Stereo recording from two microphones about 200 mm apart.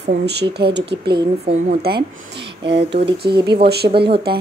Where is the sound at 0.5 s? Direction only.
55° right (ahead or behind).